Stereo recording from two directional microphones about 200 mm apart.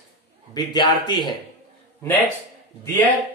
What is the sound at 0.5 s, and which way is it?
Speech, 20° left (ahead or behind).